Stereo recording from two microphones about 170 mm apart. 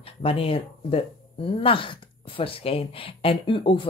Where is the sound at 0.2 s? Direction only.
35° left (ahead or behind).